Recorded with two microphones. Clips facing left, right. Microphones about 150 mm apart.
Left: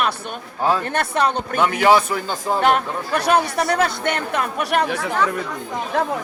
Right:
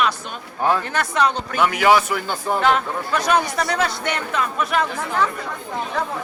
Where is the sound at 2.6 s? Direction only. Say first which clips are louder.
Left 2 dB; 55° left (ahead or behind); by 5.1 s 75° left (ahead or behind).